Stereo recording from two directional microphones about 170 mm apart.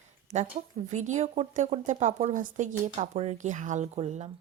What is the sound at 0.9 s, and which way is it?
A child's voice, 45° right (ahead or behind).